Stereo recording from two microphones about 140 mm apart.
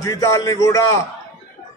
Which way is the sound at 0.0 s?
25° left (ahead or behind).